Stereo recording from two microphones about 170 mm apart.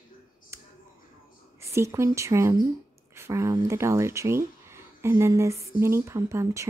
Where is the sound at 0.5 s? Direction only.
15° right (ahead or behind).